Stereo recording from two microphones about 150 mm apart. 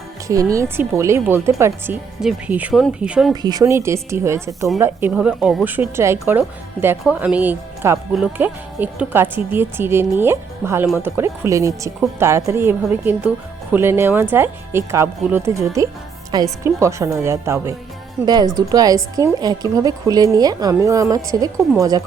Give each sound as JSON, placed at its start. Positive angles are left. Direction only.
{"t": 0.3, "sound": "a woman's voice", "side_deg": -20}
{"t": 3.4, "sound": "a woman's voice", "side_deg": -25}